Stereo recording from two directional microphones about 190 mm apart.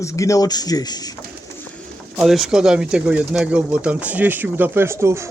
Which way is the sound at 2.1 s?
Centre (ahead or behind).